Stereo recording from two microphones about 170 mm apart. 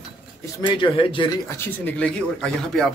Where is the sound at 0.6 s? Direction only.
30° left (ahead or behind).